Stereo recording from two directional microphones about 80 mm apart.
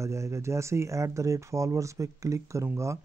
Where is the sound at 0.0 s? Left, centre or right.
Right.